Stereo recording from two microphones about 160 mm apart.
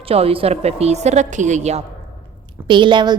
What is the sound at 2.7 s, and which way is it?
Speech, 30° right (ahead or behind).